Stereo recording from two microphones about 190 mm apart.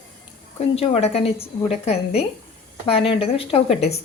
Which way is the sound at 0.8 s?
30° left (ahead or behind).